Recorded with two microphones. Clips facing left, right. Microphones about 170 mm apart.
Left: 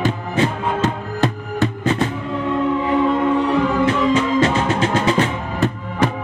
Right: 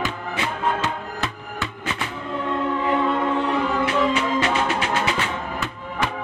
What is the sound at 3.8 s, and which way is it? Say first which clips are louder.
Music: left 4 dB; 30° left (ahead or behind).